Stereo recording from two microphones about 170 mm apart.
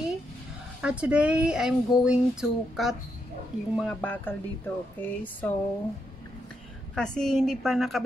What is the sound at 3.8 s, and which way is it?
Speech, 10° left (ahead or behind).